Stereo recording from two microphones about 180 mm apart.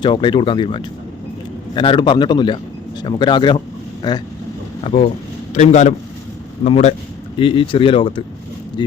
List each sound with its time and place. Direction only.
0.0 s a man's voice: 25° left (ahead or behind)
4.8 s a man's voice: 35° left (ahead or behind)